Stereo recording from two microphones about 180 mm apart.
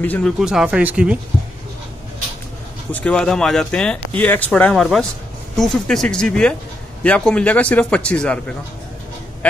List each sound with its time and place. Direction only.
0.0 s speech: 10° left (ahead or behind)
0.4 s speech: 5° right (ahead or behind)
2.9 s speech: 10° left (ahead or behind)